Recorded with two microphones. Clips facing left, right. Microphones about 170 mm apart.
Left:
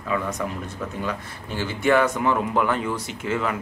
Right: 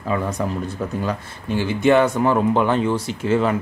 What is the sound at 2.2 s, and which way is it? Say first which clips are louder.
Speech: right 5 dB; 35° right (ahead or behind).